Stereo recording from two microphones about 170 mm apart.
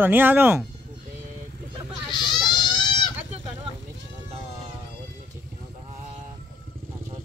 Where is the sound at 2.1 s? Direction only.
25° left (ahead or behind).